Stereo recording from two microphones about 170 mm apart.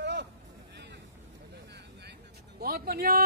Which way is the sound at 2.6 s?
60° right (ahead or behind).